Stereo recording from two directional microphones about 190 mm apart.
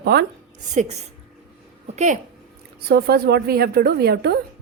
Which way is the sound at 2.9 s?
55° right (ahead or behind).